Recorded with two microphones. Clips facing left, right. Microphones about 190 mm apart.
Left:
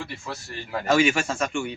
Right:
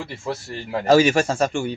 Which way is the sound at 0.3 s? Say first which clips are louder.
Right 6 dB; 35° right (ahead or behind).